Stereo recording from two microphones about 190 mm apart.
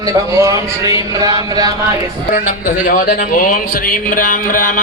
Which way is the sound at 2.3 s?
45° left (ahead or behind).